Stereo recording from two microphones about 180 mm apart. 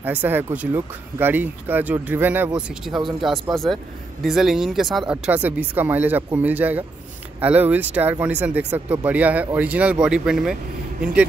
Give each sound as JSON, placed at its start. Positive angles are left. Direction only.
{"t": 0.0, "sound": "speech", "side_deg": -10}